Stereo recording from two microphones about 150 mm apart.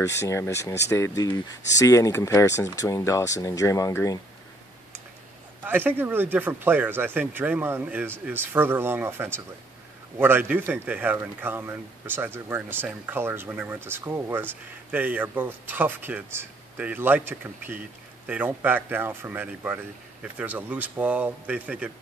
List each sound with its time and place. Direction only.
0.0 s speech: 20° left (ahead or behind)
5.6 s speech: 15° right (ahead or behind)